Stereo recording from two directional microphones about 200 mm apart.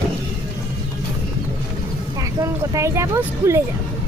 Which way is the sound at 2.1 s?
15° right (ahead or behind).